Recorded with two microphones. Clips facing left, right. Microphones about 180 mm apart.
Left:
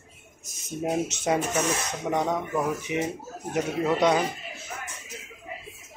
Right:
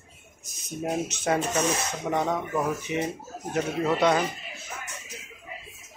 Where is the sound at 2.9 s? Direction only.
15° left (ahead or behind).